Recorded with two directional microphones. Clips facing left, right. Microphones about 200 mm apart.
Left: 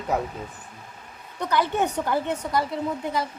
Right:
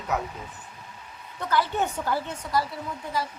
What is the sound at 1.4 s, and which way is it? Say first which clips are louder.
A woman's voice: left 2 dB; 20° left (ahead or behind).